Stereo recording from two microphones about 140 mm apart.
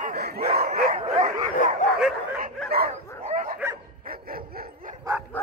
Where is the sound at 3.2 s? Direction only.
80° right.